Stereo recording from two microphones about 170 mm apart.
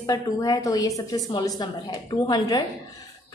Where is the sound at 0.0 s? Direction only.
20° left (ahead or behind).